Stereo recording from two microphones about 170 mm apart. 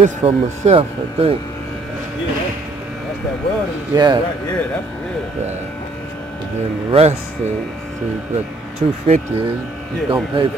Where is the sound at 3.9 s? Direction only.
25° right (ahead or behind).